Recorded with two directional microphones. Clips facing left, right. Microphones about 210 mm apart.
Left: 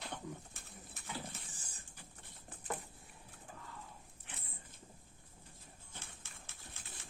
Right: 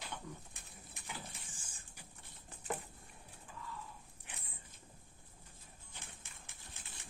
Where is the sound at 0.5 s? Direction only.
15° right (ahead or behind).